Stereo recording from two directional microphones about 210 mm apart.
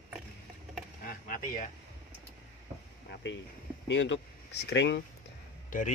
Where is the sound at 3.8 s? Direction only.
60° left (ahead or behind).